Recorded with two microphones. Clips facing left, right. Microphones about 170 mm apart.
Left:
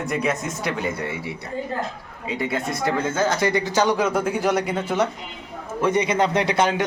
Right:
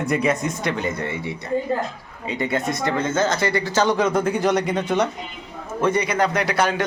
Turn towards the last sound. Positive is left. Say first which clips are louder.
# left 1 dB
turn(degrees=20)  # may be behind; listen again after turning